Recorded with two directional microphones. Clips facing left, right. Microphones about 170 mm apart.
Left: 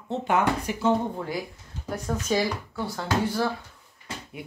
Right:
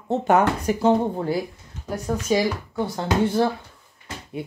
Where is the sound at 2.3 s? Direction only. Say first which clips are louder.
Right 4 dB; 15° right (ahead or behind).